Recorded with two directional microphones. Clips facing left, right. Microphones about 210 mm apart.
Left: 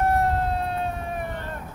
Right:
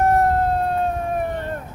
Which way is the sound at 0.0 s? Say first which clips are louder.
Right 5 dB; 45° right (ahead or behind).